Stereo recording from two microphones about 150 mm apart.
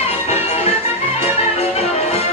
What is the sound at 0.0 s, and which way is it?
Music, 45° left (ahead or behind).